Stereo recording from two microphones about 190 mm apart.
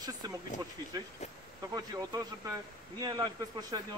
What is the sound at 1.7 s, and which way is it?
Speech, 20° right (ahead or behind).